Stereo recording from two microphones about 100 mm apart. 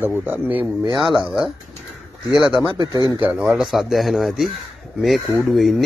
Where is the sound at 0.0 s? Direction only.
15° right (ahead or behind).